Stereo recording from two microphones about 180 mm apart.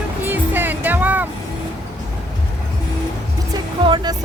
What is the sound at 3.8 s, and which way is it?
Music, 25° right (ahead or behind).